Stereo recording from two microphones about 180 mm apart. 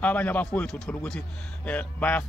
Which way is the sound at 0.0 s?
10° left (ahead or behind).